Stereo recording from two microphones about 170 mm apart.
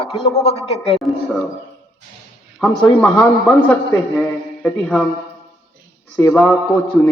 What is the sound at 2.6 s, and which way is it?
A man's voice, 5° left (ahead or behind).